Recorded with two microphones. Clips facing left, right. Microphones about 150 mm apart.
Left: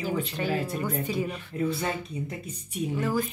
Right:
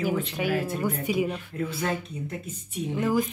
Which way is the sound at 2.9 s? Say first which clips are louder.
Right 3 dB; 15° right (ahead or behind).